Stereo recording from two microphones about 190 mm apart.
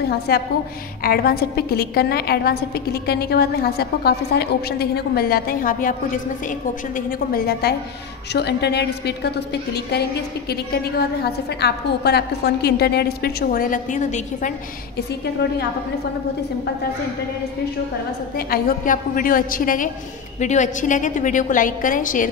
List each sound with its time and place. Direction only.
0.3 s a woman's voice: 55° left (ahead or behind); by 14.5 s 40° left (ahead or behind)
18.3 s a woman's voice: 50° left (ahead or behind)